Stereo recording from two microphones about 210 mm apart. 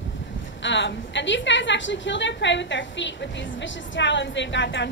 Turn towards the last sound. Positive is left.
turn(degrees=55)  # may be behind; listen again after turning